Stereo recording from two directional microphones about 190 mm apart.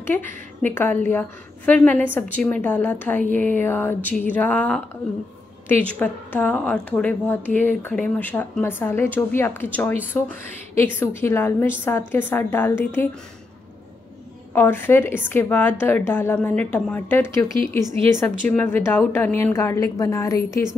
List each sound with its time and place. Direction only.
0.0 s speech: 10° left (ahead or behind)
14.5 s speech: 10° left (ahead or behind)